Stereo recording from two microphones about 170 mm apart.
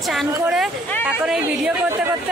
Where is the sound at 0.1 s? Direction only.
Centre (ahead or behind).